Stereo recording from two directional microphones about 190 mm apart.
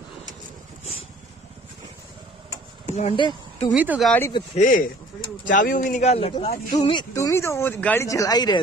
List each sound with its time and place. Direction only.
2.9 s speech: 30° left (ahead or behind)
3.7 s speech: 10° right (ahead or behind)
4.6 s speech: 45° left (ahead or behind); by 8.5 s 20° left (ahead or behind)